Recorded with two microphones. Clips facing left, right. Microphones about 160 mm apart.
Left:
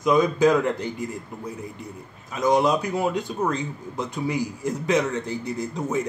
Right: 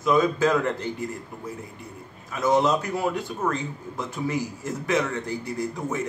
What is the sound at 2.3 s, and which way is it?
A man's voice, 15° left (ahead or behind).